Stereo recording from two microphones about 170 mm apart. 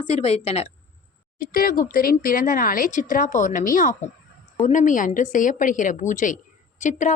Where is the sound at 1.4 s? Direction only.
60° left (ahead or behind).